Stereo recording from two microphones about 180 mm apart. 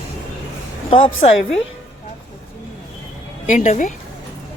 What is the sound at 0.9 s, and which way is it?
Speech, 30° left (ahead or behind).